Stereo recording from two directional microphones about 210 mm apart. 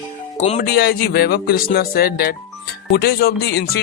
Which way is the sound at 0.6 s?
45° left (ahead or behind).